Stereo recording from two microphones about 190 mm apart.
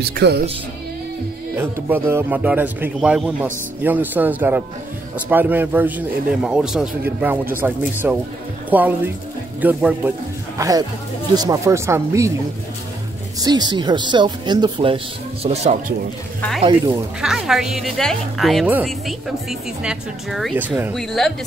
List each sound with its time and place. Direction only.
0.1 s speech: 60° right (ahead or behind)
1.6 s speech: 10° right (ahead or behind)
10.6 s speech: 20° right (ahead or behind)
13.4 s speech: 20° right (ahead or behind)
16.3 s speech: 5° left (ahead or behind)
20.9 s speech: centre (ahead or behind)